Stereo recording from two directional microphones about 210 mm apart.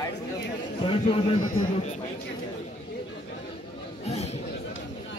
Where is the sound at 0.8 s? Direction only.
25° left (ahead or behind).